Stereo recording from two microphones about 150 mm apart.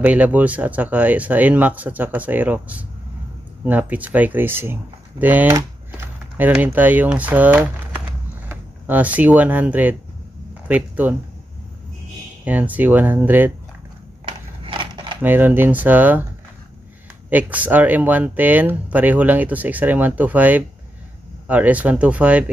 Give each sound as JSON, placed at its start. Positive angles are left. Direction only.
{"t": 0.0, "sound": "speech", "side_deg": -10}
{"t": 12.4, "sound": "speech", "side_deg": -10}
{"t": 14.2, "sound": "a sound", "side_deg": -35}
{"t": 15.2, "sound": "speech", "side_deg": -15}
{"t": 17.3, "sound": "speech", "side_deg": -10}